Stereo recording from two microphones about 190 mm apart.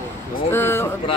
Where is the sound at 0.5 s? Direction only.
10° left (ahead or behind).